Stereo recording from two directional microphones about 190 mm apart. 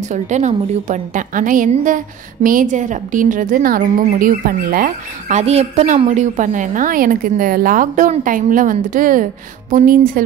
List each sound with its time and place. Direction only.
0.1 s a woman's voice: 40° right (ahead or behind)